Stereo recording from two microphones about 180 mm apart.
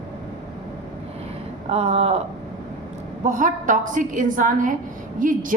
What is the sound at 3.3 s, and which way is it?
A woman's voice, 45° right (ahead or behind).